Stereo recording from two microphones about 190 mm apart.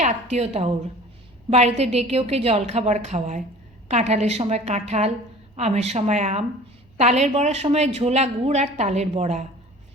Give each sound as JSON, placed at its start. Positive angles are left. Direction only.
{"t": 0.0, "sound": "speech", "side_deg": -35}